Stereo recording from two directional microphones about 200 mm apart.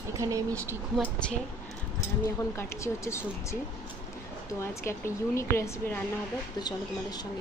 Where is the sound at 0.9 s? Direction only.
5° left (ahead or behind).